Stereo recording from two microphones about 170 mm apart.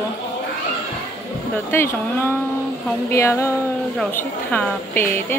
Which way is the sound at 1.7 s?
15° left (ahead or behind).